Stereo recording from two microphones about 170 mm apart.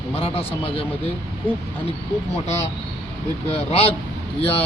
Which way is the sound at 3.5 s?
35° left (ahead or behind).